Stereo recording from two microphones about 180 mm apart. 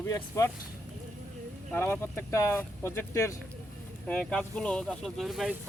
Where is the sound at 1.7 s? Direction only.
10° left (ahead or behind).